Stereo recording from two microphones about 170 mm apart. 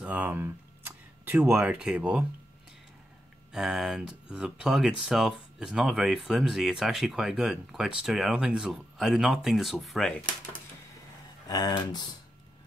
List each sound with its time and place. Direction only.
0.0 s a sound: 10° right (ahead or behind)
3.5 s speech: centre (ahead or behind)
11.4 s speech: 25° left (ahead or behind)